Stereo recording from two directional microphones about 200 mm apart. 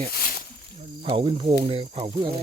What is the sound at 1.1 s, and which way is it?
Speech, 25° right (ahead or behind).